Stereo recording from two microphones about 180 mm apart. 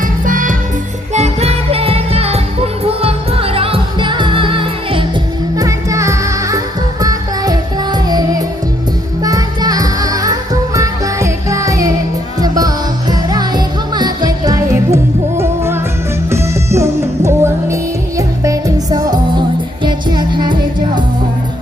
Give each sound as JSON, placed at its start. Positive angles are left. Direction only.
{"t": 0.0, "sound": "music", "side_deg": -50}
{"t": 1.1, "sound": "music", "side_deg": -35}